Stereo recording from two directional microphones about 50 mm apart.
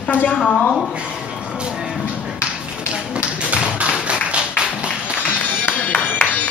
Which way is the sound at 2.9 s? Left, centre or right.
Right.